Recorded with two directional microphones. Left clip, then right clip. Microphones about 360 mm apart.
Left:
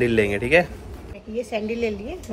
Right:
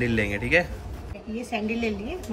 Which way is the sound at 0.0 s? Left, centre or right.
Centre.